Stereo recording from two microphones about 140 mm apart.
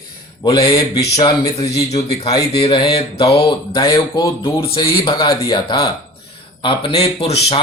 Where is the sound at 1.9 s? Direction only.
50° left (ahead or behind).